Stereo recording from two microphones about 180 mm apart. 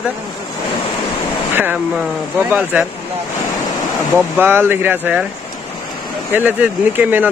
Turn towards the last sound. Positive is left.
turn(degrees=-10)  # may be behind; listen again after turning